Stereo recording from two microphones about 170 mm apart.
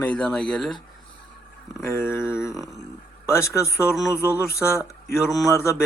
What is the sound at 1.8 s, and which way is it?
Speech, 15° left (ahead or behind).